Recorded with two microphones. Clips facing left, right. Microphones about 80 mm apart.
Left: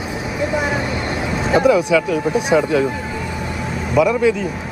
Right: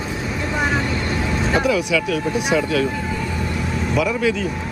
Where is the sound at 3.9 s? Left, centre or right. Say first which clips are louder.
Left 6 dB; centre.